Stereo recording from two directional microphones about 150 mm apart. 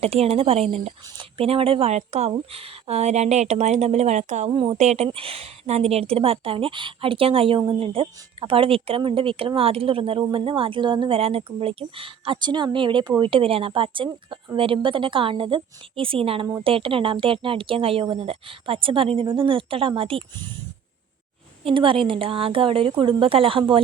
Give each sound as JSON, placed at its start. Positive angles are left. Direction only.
{"t": 0.0, "sound": "speech", "side_deg": -45}
{"t": 4.5, "sound": "speech", "side_deg": -35}
{"t": 4.8, "sound": "speech", "side_deg": -50}
{"t": 5.0, "sound": "speech", "side_deg": -35}
{"t": 21.6, "sound": "speech", "side_deg": -35}